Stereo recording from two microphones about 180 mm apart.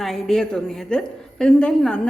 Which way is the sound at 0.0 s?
Centre (ahead or behind).